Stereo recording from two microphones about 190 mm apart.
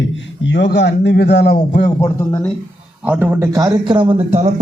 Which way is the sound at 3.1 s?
10° right (ahead or behind).